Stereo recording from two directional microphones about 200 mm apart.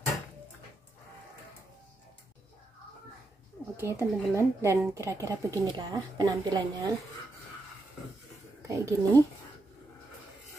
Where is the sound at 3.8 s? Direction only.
15° right (ahead or behind).